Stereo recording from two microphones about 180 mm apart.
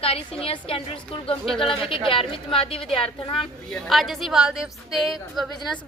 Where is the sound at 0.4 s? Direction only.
30° left (ahead or behind).